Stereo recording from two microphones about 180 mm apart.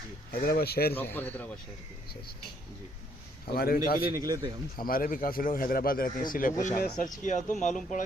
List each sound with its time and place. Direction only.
0.3 s speech: 55° left (ahead or behind)
0.9 s speech: 10° left (ahead or behind)
3.4 s speech: 55° left (ahead or behind)
4.1 s speech: 20° right (ahead or behind)
4.8 s speech: 55° left (ahead or behind)